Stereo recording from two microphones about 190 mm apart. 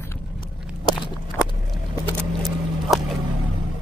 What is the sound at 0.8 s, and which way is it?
Walk, 25° left (ahead or behind).